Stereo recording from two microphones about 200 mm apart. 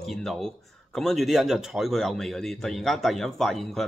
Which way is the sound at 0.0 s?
Centre (ahead or behind).